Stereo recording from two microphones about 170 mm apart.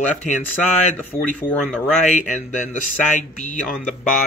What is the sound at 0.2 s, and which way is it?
Speech, 45° left (ahead or behind).